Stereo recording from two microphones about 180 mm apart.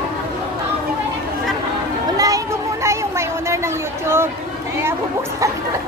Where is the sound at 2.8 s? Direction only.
15° right (ahead or behind).